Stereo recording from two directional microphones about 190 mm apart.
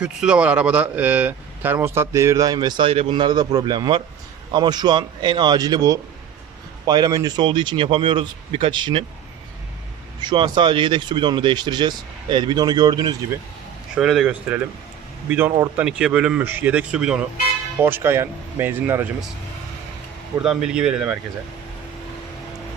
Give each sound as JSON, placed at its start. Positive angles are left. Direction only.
{"t": 0.0, "sound": "speech", "side_deg": -5}
{"t": 10.2, "sound": "speech", "side_deg": -25}
{"t": 13.9, "sound": "speech", "side_deg": -5}
{"t": 15.8, "sound": "speech", "side_deg": -5}
{"t": 20.4, "sound": "speech", "side_deg": -5}